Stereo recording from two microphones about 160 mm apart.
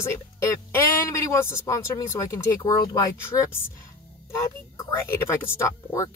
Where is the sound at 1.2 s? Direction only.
20° left (ahead or behind).